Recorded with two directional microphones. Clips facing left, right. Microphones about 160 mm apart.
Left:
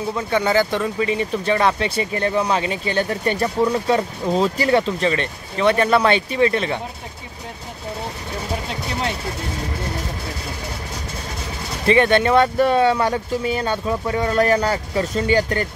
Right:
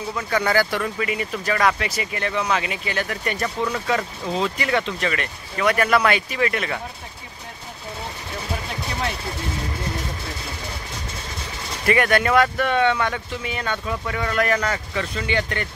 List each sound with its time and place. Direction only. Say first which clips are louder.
0.1 s speech: left 2 dB; 20° left (ahead or behind)
11.8 s speech: left 4 dB; 25° left (ahead or behind)